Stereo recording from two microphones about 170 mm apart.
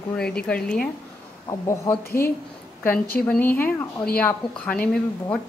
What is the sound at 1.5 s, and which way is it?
Speech, 15° left (ahead or behind).